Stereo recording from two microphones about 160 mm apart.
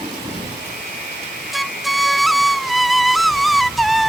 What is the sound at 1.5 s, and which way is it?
Flute, centre (ahead or behind).